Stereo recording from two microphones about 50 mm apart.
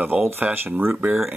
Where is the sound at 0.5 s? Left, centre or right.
Right.